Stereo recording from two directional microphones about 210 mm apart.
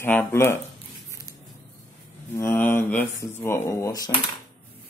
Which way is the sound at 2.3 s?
10° left (ahead or behind).